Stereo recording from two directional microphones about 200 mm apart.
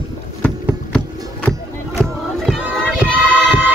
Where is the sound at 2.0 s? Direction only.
5° left (ahead or behind).